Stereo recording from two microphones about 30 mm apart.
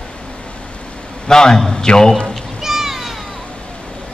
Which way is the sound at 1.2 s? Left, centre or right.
Left.